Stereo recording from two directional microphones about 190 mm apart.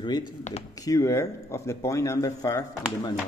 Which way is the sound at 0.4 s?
35° left (ahead or behind).